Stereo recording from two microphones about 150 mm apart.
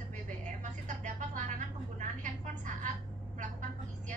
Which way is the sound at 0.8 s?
60° right (ahead or behind).